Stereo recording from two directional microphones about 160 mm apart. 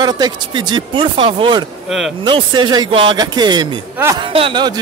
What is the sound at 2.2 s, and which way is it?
Speech, 30° right (ahead or behind).